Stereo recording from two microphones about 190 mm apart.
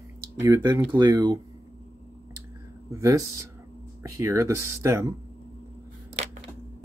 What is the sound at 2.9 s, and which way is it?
Speech, 15° right (ahead or behind).